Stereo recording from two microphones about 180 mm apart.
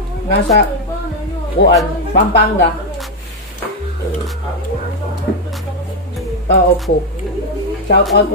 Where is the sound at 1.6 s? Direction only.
60° left (ahead or behind).